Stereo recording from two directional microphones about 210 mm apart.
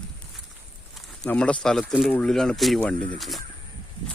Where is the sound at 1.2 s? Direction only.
5° left (ahead or behind).